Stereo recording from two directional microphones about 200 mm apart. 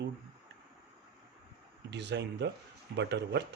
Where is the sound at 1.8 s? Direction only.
60° right (ahead or behind).